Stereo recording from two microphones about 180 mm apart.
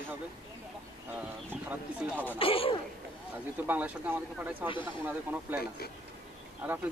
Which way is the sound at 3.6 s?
10° right (ahead or behind).